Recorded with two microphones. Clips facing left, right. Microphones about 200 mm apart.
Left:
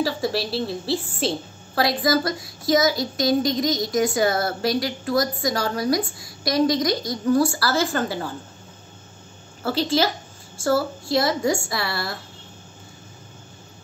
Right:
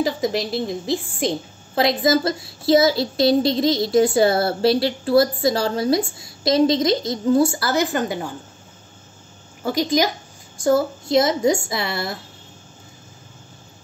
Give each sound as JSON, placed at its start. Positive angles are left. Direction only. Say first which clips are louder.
{"t": 0.0, "sound": "a woman's voice", "louder": "right 2 dB", "side_deg": -20}
{"t": 9.6, "sound": "a woman's voice", "louder": "right 2 dB", "side_deg": -15}